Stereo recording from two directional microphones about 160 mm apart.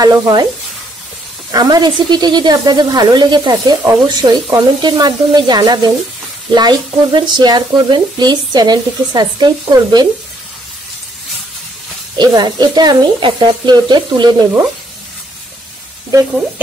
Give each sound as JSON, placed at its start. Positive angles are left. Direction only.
{"t": 0.0, "sound": "speech", "side_deg": -25}
{"t": 1.5, "sound": "speech", "side_deg": -25}
{"t": 12.2, "sound": "speech", "side_deg": -25}